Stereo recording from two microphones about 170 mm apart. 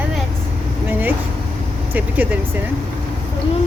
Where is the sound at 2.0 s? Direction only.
10° right (ahead or behind).